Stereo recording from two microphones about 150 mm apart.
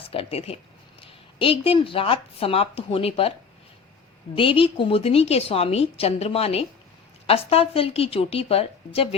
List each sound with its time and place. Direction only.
0.0 s a woman's voice: 40° left (ahead or behind)
4.4 s a woman's voice: 35° left (ahead or behind)